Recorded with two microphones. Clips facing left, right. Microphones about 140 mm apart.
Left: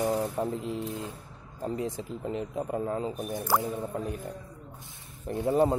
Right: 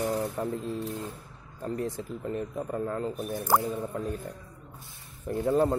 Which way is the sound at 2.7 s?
10° left (ahead or behind).